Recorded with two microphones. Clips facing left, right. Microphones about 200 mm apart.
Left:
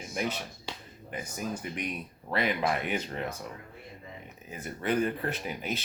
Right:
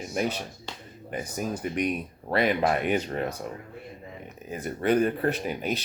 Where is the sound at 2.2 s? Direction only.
40° right (ahead or behind).